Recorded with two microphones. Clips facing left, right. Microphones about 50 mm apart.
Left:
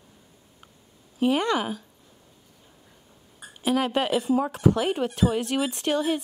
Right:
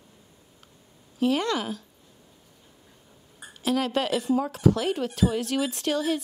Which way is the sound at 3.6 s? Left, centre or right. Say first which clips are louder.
Left 1 dB; centre.